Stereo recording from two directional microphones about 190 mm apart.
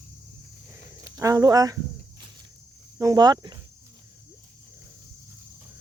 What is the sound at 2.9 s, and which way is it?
Speech, 20° right (ahead or behind).